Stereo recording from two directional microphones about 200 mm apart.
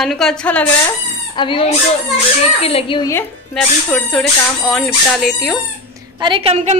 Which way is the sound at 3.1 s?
5° left (ahead or behind).